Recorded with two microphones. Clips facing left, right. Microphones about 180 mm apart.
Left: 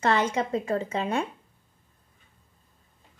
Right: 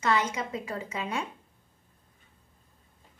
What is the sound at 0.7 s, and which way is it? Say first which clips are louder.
Speech: left 7 dB; 30° left (ahead or behind).